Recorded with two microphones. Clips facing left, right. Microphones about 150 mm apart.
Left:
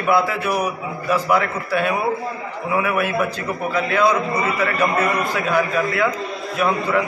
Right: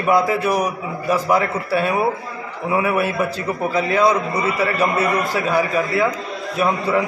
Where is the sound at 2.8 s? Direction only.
35° right (ahead or behind).